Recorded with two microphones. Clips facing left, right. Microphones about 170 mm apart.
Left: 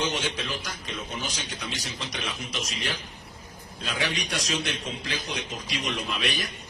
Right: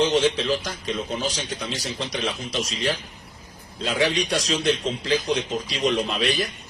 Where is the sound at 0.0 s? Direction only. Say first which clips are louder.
Right 9 dB; 35° right (ahead or behind).